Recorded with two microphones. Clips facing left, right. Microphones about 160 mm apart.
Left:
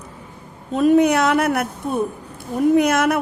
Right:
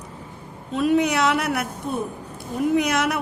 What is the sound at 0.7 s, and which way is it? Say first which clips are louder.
Speech: left 5 dB; 45° left (ahead or behind).